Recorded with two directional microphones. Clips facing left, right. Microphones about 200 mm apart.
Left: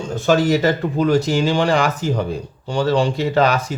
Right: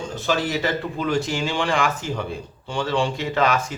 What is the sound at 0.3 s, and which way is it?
Speech, 40° left (ahead or behind).